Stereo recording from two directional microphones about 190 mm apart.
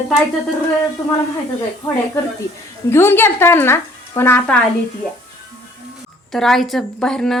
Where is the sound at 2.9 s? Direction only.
10° left (ahead or behind).